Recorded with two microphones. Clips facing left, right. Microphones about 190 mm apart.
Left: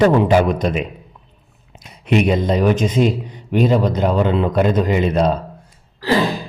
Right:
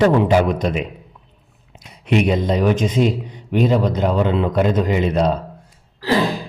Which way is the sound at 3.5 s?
45° left (ahead or behind).